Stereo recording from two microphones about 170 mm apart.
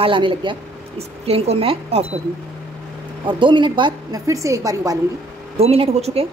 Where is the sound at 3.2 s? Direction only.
30° right (ahead or behind).